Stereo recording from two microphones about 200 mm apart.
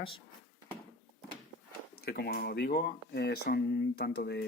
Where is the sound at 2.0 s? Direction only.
50° left (ahead or behind).